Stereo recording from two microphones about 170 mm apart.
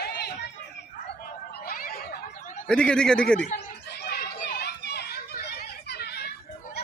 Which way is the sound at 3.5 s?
75° left (ahead or behind).